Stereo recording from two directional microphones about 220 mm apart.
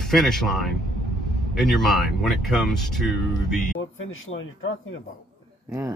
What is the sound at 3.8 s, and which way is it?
Speech, 65° left (ahead or behind).